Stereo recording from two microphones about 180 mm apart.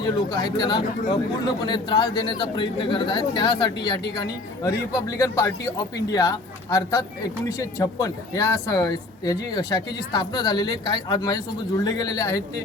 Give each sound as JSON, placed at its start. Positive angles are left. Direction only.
{"t": 0.3, "sound": "a man's voice", "side_deg": 20}